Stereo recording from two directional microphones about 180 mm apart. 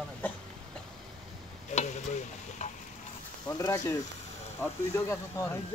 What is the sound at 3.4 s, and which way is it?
Speech, 20° left (ahead or behind).